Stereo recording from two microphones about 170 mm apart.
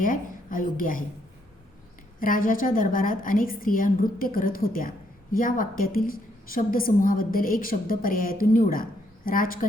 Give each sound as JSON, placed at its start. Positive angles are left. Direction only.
{"t": 0.0, "sound": "a woman's voice", "side_deg": 50}
{"t": 2.1, "sound": "a woman's voice", "side_deg": 55}